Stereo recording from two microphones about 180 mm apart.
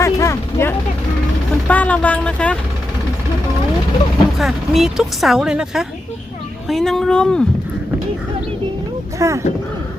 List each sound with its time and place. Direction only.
0.0 s a sound: 15° left (ahead or behind)
1.6 s speech: 10° left (ahead or behind)
4.4 s speech: centre (ahead or behind)
9.1 s speech: 15° right (ahead or behind)